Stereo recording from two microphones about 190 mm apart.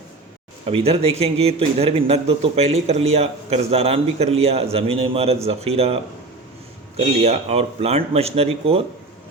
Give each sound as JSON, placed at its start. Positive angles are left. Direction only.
{"t": 0.6, "sound": "speech", "side_deg": -30}